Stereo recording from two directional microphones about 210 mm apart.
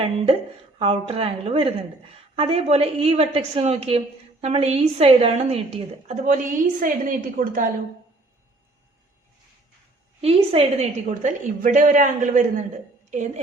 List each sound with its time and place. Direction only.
0.8 s a woman's voice: 30° right (ahead or behind)
10.2 s a woman's voice: 25° right (ahead or behind)